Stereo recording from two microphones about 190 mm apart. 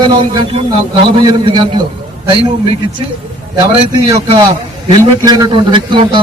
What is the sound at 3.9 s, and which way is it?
A man's voice, 25° right (ahead or behind).